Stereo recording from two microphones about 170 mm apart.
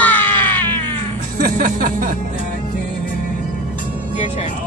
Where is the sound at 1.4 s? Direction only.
55° right (ahead or behind).